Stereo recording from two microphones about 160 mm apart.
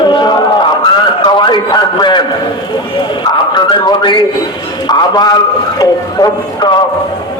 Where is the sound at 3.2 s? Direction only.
25° left (ahead or behind).